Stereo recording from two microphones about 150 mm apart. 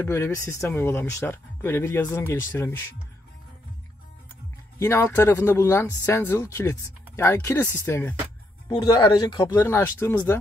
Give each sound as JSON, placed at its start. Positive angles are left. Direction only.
{"t": 0.0, "sound": "speech", "side_deg": 15}
{"t": 4.7, "sound": "speech", "side_deg": 15}
{"t": 8.6, "sound": "speech", "side_deg": 25}